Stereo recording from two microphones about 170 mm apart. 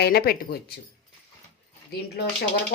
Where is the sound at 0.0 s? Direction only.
65° left (ahead or behind).